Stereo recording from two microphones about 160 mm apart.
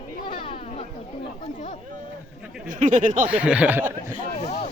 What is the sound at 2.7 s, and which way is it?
Speech, 50° right (ahead or behind).